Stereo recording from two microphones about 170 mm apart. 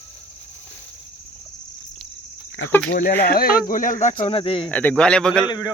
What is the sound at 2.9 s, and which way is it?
Speech, 65° left (ahead or behind).